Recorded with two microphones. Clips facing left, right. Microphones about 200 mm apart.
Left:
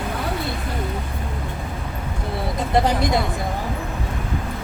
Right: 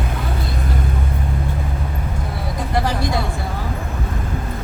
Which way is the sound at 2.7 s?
20° left (ahead or behind).